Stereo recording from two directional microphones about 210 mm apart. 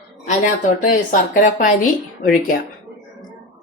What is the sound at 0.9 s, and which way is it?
Speech, 40° left (ahead or behind).